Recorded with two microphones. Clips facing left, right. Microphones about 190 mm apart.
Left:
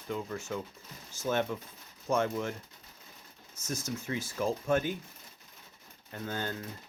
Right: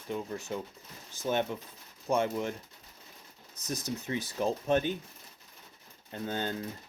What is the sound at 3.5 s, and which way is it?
Speech, 35° right (ahead or behind).